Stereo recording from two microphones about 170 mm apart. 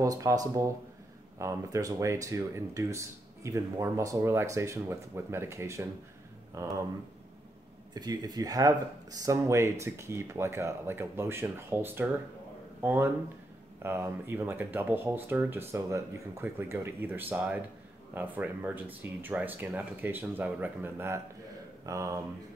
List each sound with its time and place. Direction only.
0.0 s speech: 20° right (ahead or behind)
7.9 s speech: 25° right (ahead or behind)